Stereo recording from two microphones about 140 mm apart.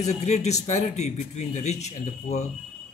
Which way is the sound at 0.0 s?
55° left (ahead or behind).